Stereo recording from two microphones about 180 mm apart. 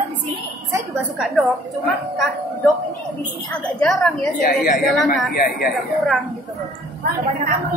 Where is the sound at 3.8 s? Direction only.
Centre (ahead or behind).